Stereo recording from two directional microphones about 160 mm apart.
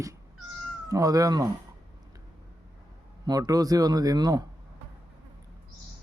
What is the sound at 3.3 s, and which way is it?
Speech, 25° right (ahead or behind).